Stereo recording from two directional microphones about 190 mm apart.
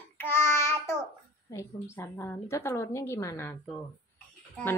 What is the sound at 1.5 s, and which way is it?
A woman's voice, 15° left (ahead or behind).